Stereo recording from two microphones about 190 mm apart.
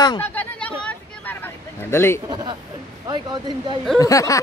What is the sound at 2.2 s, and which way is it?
Speech, 25° right (ahead or behind).